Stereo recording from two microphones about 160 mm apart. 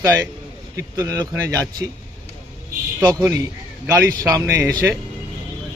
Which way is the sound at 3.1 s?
20° right (ahead or behind).